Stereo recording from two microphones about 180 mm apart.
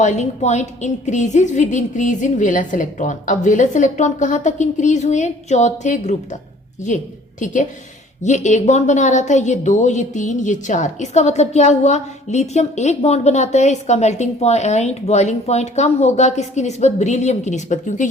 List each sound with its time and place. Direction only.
0.0 s a woman's voice: 40° left (ahead or behind)